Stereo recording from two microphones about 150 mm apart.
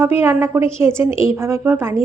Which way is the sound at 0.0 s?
15° right (ahead or behind).